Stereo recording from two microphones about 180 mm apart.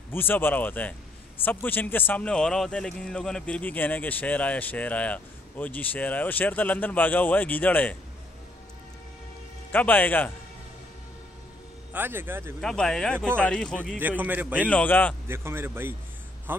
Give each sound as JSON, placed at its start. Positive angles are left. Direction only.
{"t": 0.1, "sound": "a man's voice", "side_deg": 10}
{"t": 9.7, "sound": "a man's voice", "side_deg": 10}
{"t": 11.9, "sound": "a man's voice", "side_deg": -10}
{"t": 12.5, "sound": "speech", "side_deg": 0}
{"t": 13.9, "sound": "a man's voice", "side_deg": -10}
{"t": 14.7, "sound": "a man's voice", "side_deg": 10}
{"t": 15.2, "sound": "a man's voice", "side_deg": -15}